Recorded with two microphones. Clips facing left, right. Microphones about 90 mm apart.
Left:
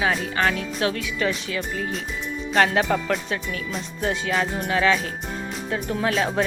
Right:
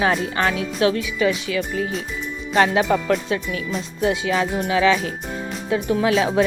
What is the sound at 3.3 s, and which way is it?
Speech, 40° left (ahead or behind).